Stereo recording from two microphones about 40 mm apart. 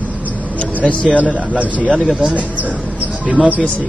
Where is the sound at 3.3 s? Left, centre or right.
Right.